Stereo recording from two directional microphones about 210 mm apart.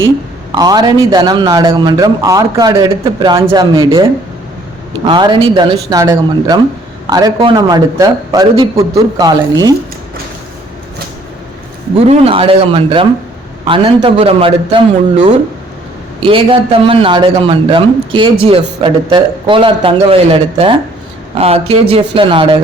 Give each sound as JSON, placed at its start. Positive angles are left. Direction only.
{"t": 0.5, "sound": "a man's voice", "side_deg": -20}
{"t": 5.0, "sound": "a man's voice", "side_deg": -20}
{"t": 11.9, "sound": "a man's voice", "side_deg": -25}
{"t": 16.2, "sound": "a man's voice", "side_deg": -25}